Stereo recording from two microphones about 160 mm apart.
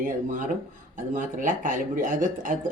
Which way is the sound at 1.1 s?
55° right (ahead or behind).